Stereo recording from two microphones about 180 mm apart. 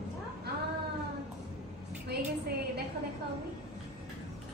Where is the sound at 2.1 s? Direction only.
60° right (ahead or behind).